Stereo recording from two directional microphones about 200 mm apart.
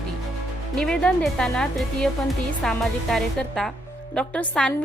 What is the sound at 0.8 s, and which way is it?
A woman's voice, 5° left (ahead or behind).